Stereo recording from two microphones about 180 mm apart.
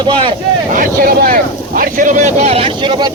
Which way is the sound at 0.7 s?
50° right (ahead or behind).